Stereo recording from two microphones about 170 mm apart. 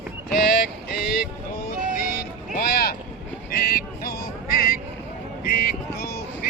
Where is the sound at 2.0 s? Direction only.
60° left (ahead or behind).